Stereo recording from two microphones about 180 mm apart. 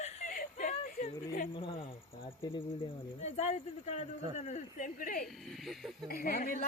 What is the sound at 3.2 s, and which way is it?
Speech, 40° left (ahead or behind).